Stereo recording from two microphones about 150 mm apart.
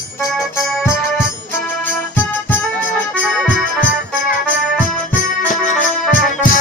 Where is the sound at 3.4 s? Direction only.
5° left (ahead or behind).